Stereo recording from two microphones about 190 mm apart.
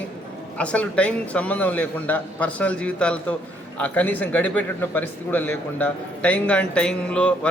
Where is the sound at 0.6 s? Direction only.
5° left (ahead or behind).